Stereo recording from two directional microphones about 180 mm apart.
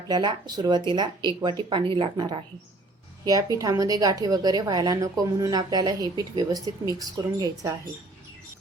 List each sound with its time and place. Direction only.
0.1 s a woman's voice: 25° right (ahead or behind)
3.6 s a woman's voice: 20° right (ahead or behind)